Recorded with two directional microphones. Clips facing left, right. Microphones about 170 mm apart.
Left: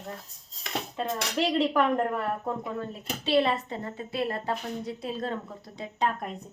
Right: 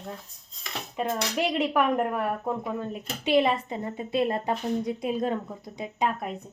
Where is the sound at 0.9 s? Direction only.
15° right (ahead or behind).